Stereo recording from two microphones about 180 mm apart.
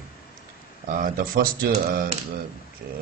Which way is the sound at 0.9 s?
55° right (ahead or behind).